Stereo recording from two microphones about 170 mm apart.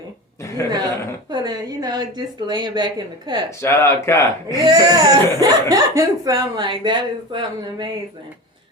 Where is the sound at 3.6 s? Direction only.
15° left (ahead or behind).